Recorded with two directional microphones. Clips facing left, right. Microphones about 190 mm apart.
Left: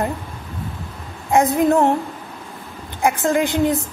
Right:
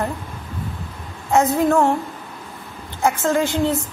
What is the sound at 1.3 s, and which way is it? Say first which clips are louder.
Speech: left 1 dB; 15° left (ahead or behind).